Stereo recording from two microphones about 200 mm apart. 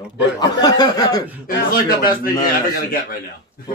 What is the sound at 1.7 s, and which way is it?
A man's voice, 45° left (ahead or behind).